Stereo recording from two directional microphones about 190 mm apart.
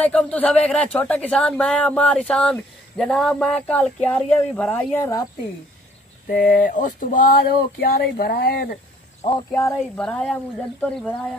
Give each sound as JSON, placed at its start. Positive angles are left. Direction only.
{"t": 0.0, "sound": "a woman's voice", "side_deg": 5}
{"t": 6.2, "sound": "speech", "side_deg": 55}
{"t": 9.5, "sound": "a woman's voice", "side_deg": 15}
{"t": 9.9, "sound": "a woman's voice", "side_deg": 5}